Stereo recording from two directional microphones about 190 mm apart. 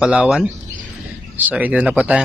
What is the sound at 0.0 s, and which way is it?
Speech, 5° right (ahead or behind).